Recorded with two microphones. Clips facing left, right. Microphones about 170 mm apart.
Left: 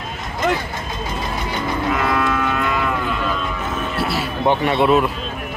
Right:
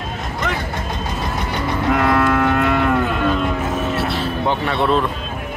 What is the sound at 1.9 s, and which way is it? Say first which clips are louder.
Cattle: right 5 dB; 60° right (ahead or behind).